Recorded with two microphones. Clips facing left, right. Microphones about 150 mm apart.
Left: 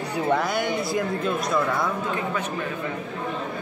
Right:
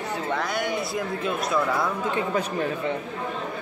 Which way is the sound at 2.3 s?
35° right (ahead or behind).